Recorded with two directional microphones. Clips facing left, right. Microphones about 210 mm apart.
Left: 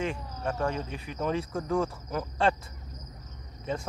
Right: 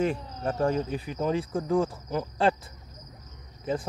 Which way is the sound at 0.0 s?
35° right (ahead or behind).